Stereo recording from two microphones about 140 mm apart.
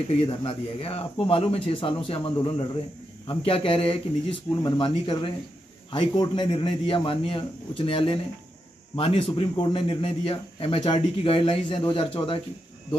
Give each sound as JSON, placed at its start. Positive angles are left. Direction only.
{"t": 0.1, "sound": "a man's voice", "side_deg": 40}